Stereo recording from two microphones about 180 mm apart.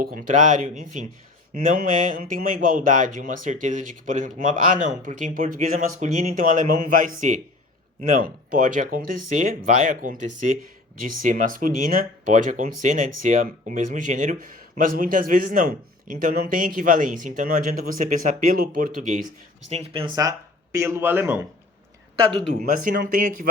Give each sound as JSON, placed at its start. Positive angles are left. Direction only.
{"t": 0.0, "sound": "speech", "side_deg": -55}
{"t": 19.7, "sound": "speech", "side_deg": -30}
{"t": 22.3, "sound": "speech", "side_deg": -45}